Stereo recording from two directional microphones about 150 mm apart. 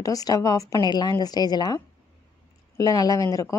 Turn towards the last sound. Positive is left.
turn(degrees=20)  # may be behind; listen again after turning